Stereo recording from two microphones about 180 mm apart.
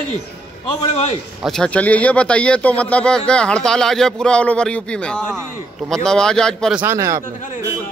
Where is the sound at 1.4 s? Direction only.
5° left (ahead or behind).